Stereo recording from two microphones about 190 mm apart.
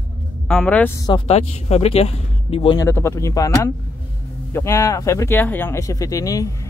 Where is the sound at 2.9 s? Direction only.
15° left (ahead or behind).